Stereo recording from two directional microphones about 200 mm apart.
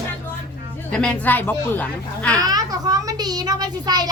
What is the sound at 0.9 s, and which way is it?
Speech, 5° left (ahead or behind).